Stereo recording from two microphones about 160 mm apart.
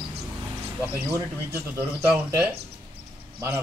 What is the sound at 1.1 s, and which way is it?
A man's voice, 15° right (ahead or behind).